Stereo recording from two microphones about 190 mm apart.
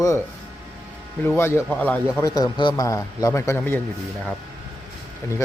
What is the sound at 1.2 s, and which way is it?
A man's voice, 10° left (ahead or behind).